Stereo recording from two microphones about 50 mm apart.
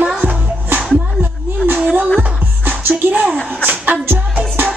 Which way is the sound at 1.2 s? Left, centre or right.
Right.